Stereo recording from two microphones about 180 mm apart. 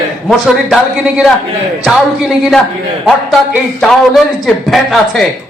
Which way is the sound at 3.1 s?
Centre (ahead or behind).